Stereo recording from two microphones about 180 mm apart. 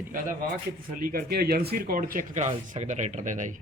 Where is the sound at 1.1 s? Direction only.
60° right (ahead or behind).